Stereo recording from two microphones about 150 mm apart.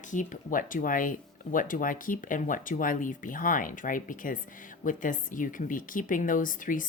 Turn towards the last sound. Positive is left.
turn(degrees=60)  # may be behind; listen again after turning